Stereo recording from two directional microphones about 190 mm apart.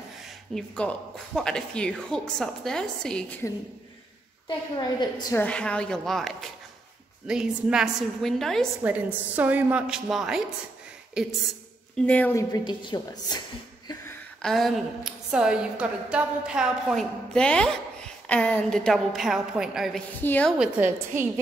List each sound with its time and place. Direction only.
0.2 s a woman's voice: 5° left (ahead or behind)
4.5 s a woman's voice: 25° left (ahead or behind)
5.4 s a woman's voice: 5° left (ahead or behind)
12.1 s a woman's voice: 10° left (ahead or behind)
14.4 s a woman's voice: centre (ahead or behind)
20.2 s a woman's voice: 10° left (ahead or behind)
20.5 s a woman's voice: 10° right (ahead or behind)